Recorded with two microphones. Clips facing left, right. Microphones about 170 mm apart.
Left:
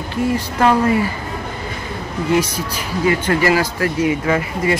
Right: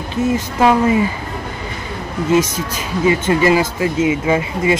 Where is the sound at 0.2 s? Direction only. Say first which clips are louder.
Right 2 dB; 25° right (ahead or behind).